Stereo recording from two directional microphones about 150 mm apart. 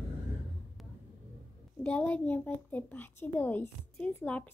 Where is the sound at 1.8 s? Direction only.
10° left (ahead or behind).